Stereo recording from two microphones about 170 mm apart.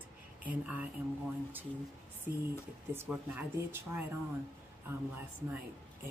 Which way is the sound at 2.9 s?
10° right (ahead or behind).